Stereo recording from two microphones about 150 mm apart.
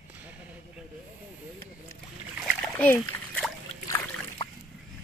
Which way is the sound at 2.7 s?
10° left (ahead or behind).